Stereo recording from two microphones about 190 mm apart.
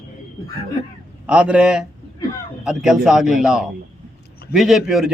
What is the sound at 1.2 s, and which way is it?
A man's voice, 5° right (ahead or behind).